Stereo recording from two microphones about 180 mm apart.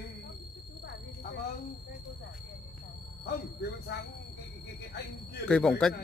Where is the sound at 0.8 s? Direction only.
70° left (ahead or behind).